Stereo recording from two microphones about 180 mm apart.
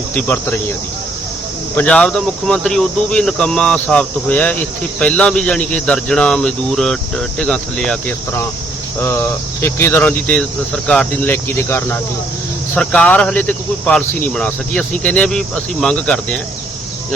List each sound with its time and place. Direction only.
0.1 s speech: 10° left (ahead or behind)
1.7 s speech: 5° left (ahead or behind)